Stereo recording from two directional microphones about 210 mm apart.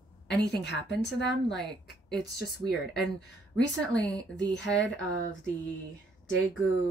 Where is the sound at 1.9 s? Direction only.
50° left (ahead or behind).